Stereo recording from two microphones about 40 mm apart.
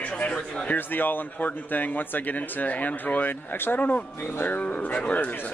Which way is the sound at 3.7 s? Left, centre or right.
Left.